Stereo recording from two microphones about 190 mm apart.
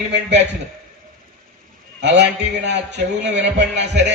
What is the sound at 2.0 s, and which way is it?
A man's voice, 65° right (ahead or behind).